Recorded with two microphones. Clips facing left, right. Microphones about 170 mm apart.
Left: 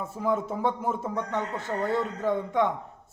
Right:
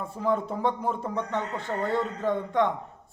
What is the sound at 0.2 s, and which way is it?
A man's voice, 10° left (ahead or behind).